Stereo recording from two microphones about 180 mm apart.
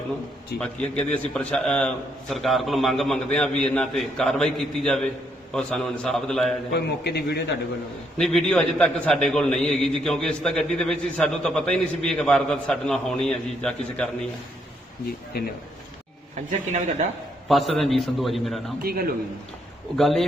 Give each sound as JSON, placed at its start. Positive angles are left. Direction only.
{"t": 0.6, "sound": "a man's voice", "side_deg": 5}
{"t": 6.7, "sound": "a man's voice", "side_deg": 65}
{"t": 8.2, "sound": "a man's voice", "side_deg": 5}
{"t": 16.5, "sound": "speech", "side_deg": -40}
{"t": 17.5, "sound": "a man's voice", "side_deg": 0}
{"t": 18.8, "sound": "a man's voice", "side_deg": -55}
{"t": 20.0, "sound": "a man's voice", "side_deg": 0}